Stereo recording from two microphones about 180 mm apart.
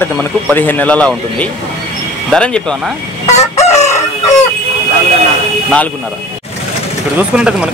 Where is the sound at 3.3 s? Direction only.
40° left (ahead or behind).